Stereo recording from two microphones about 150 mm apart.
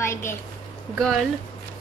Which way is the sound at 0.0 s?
15° left (ahead or behind).